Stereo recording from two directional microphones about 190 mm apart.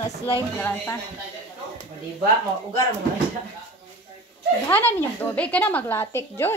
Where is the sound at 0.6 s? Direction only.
10° left (ahead or behind).